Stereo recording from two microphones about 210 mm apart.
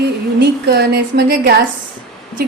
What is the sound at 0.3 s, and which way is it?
A woman's voice, 50° right (ahead or behind).